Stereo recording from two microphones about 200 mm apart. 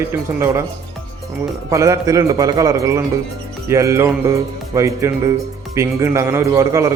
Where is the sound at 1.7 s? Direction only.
15° right (ahead or behind).